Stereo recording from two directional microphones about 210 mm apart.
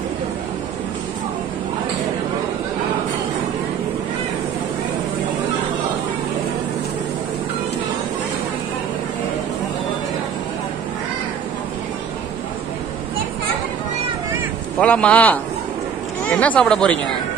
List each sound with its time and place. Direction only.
14.8 s a man's voice: 5° left (ahead or behind)